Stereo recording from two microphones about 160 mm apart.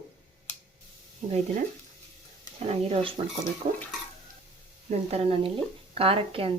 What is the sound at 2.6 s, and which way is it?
Speech, 40° right (ahead or behind).